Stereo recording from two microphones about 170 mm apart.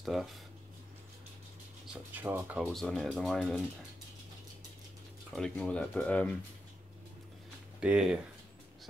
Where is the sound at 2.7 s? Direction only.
Centre (ahead or behind).